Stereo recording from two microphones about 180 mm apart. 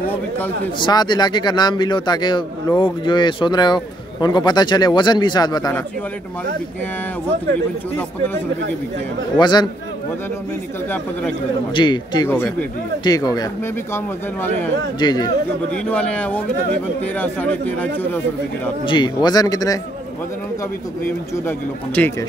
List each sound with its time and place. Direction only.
0.7 s a man's voice: 25° left (ahead or behind)
9.4 s a man's voice: 25° left (ahead or behind)
11.7 s a man's voice: 25° left (ahead or behind)
12.3 s a man's voice: 10° left (ahead or behind)
13.9 s speech: 10° left (ahead or behind)
15.0 s a man's voice: 25° left (ahead or behind)
15.7 s speech: 5° left (ahead or behind)
18.9 s a man's voice: 25° left (ahead or behind)
21.5 s speech: 10° left (ahead or behind)